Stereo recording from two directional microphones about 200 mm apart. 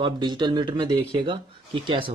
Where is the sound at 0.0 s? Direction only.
20° right (ahead or behind).